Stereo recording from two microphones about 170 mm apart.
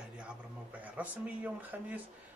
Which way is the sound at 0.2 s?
5° right (ahead or behind).